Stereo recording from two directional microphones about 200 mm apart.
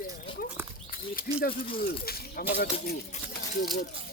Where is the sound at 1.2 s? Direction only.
45° left (ahead or behind).